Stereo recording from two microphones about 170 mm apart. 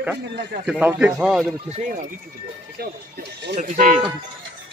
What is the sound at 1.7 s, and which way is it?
Speech, 40° right (ahead or behind).